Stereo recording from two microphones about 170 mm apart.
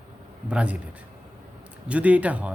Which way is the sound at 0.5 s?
5° right (ahead or behind).